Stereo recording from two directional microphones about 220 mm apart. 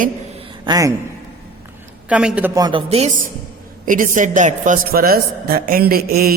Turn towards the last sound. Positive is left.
turn(degrees=-45)  # may be behind; listen again after turning